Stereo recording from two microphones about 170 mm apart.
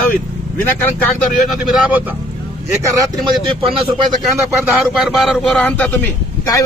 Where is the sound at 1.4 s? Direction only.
5° right (ahead or behind).